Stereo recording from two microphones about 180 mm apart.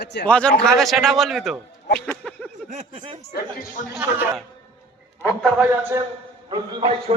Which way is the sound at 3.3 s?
55° left (ahead or behind).